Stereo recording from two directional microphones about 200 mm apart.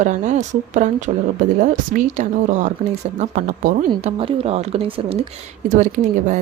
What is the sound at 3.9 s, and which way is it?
A woman's voice, 30° right (ahead or behind).